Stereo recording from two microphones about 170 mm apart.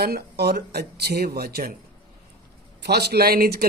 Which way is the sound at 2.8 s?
75° right (ahead or behind).